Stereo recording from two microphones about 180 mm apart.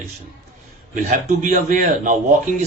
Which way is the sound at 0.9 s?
45° right (ahead or behind).